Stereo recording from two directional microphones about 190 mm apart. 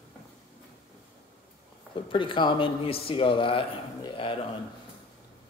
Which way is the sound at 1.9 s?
25° left (ahead or behind).